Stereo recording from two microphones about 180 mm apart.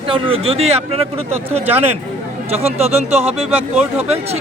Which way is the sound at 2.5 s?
35° right (ahead or behind).